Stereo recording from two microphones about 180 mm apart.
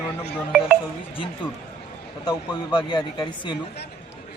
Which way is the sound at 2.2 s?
25° left (ahead or behind).